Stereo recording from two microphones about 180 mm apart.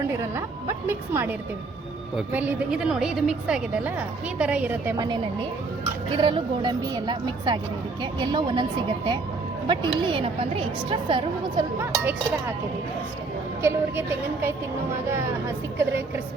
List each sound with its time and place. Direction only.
0.2 s a woman's voice: 15° right (ahead or behind)
4.9 s a woman's voice: 25° right (ahead or behind)
9.6 s a woman's voice: 30° right (ahead or behind)
11.8 s a woman's voice: 10° right (ahead or behind)
13.6 s a woman's voice: 10° right (ahead or behind)
15.8 s a woman's voice: 15° right (ahead or behind)